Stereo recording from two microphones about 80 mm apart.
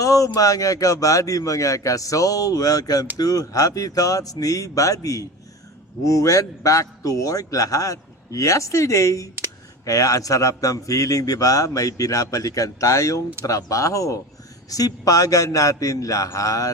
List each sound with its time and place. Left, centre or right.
0.0 s a man's voice: left